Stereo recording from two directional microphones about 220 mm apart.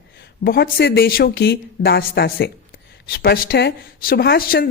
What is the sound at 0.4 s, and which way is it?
A woman's voice, 45° left (ahead or behind).